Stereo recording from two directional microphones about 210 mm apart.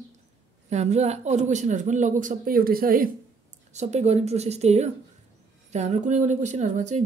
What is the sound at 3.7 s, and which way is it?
Speech, 30° right (ahead or behind).